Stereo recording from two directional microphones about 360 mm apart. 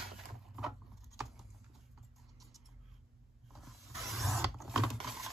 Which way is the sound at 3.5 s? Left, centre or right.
Centre.